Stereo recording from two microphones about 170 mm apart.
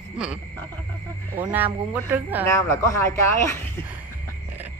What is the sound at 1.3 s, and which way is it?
Speech, 10° right (ahead or behind).